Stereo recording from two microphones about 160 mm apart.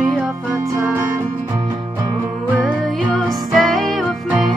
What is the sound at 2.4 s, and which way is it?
Music, 5° right (ahead or behind).